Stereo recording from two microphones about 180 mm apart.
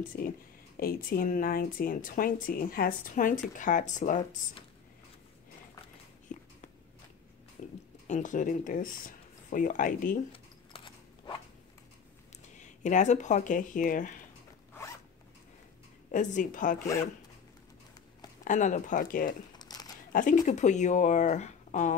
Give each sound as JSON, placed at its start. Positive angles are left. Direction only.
{"t": 0.7, "sound": "speech", "side_deg": 55}
{"t": 7.6, "sound": "a sound", "side_deg": 40}
{"t": 8.1, "sound": "speech", "side_deg": 45}
{"t": 10.3, "sound": "a sound", "side_deg": 30}
{"t": 12.8, "sound": "speech", "side_deg": 40}
{"t": 16.1, "sound": "speech", "side_deg": 45}
{"t": 18.4, "sound": "speech", "side_deg": 45}
{"t": 19.5, "sound": "crumpling", "side_deg": 20}
{"t": 20.1, "sound": "speech", "side_deg": 45}